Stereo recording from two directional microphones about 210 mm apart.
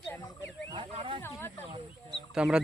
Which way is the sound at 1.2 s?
10° left (ahead or behind).